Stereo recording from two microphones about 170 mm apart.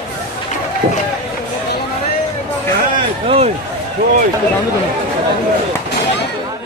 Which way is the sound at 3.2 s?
35° right (ahead or behind).